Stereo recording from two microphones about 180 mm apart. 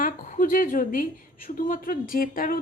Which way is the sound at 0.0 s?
45° left (ahead or behind).